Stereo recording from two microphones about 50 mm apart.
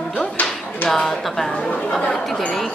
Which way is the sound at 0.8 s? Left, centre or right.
Centre.